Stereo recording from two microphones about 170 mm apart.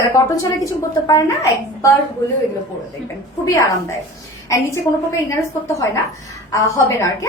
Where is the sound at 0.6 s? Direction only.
20° left (ahead or behind).